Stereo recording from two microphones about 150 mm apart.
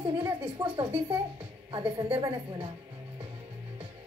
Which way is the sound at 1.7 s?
35° right (ahead or behind).